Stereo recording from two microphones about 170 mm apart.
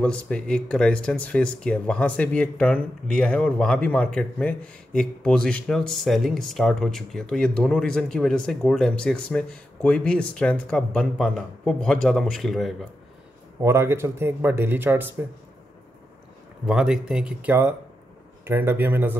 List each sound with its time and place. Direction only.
0.0 s speech: 5° left (ahead or behind)
13.6 s speech: 15° right (ahead or behind)
16.6 s speech: 5° right (ahead or behind)